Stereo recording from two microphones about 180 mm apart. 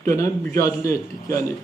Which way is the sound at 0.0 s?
15° left (ahead or behind).